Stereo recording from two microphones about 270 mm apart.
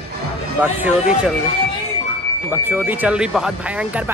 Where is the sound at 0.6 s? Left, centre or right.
Centre.